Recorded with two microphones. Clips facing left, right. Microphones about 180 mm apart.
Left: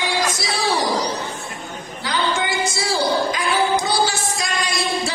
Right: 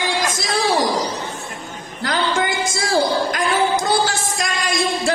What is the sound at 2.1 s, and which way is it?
Music, 50° right (ahead or behind).